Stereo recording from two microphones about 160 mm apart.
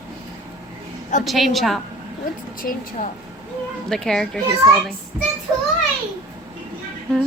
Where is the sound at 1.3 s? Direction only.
Centre (ahead or behind).